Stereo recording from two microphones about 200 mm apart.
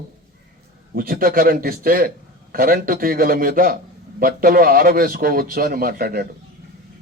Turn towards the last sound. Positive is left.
turn(degrees=-50)  # may be behind; listen again after turning